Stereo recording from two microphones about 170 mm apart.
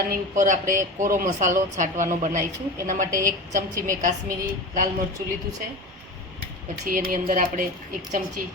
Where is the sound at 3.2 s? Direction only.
20° right (ahead or behind).